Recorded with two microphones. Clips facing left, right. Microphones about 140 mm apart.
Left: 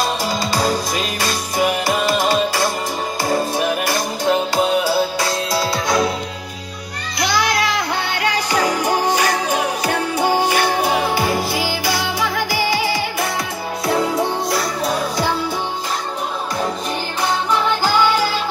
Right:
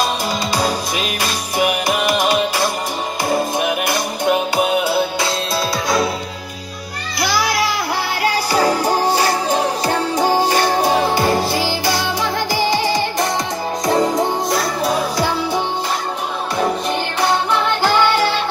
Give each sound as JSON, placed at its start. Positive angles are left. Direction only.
{"t": 0.7, "sound": "music", "side_deg": -10}
{"t": 8.2, "sound": "music", "side_deg": -30}
{"t": 8.8, "sound": "music", "side_deg": -10}
{"t": 9.5, "sound": "music", "side_deg": 10}
{"t": 17.6, "sound": "music", "side_deg": 5}